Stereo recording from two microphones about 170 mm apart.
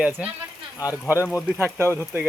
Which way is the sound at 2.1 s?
15° right (ahead or behind).